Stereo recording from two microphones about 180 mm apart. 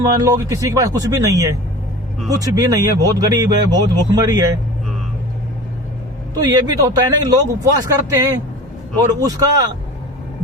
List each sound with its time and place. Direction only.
0.2 s speech: 20° right (ahead or behind)
6.4 s speech: 20° right (ahead or behind)